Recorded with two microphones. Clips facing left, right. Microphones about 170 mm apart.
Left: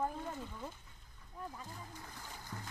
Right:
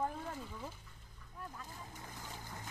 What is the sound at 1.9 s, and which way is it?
Music, 20° right (ahead or behind).